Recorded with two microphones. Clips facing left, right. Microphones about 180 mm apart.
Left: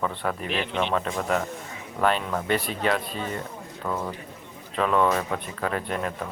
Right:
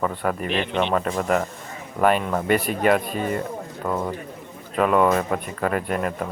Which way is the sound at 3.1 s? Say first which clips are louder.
Right 6 dB; 55° right (ahead or behind).